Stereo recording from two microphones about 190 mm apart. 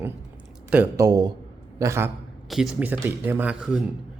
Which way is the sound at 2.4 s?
Centre (ahead or behind).